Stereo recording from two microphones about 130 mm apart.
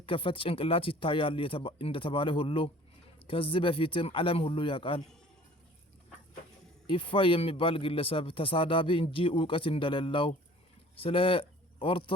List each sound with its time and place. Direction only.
0.0 s speech: 40° left (ahead or behind)
6.8 s a man's voice: 40° left (ahead or behind)